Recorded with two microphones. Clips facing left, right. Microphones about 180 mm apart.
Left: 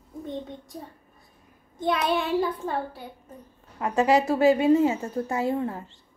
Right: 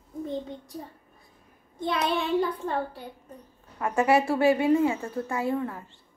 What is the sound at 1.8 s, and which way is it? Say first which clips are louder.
A child's voice: left 2 dB; centre (ahead or behind).